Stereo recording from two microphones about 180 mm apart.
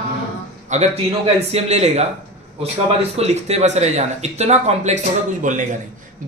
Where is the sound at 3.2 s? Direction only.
35° right (ahead or behind).